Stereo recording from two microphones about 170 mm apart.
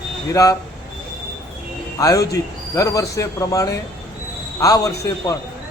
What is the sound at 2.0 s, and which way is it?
A man's voice, 20° left (ahead or behind).